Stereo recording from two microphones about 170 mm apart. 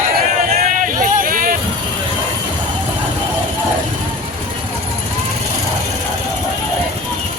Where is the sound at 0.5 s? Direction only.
50° right (ahead or behind).